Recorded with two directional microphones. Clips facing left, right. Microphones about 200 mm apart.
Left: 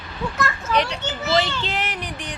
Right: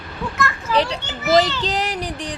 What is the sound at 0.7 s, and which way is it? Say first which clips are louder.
Speech: right 2 dB; 30° right (ahead or behind).